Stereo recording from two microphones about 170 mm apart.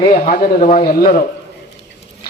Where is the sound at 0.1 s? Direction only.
55° left (ahead or behind).